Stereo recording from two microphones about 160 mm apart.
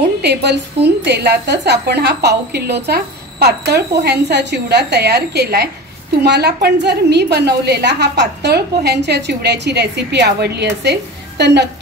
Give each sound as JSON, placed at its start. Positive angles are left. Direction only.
{"t": 0.2, "sound": "a woman's voice", "side_deg": -90}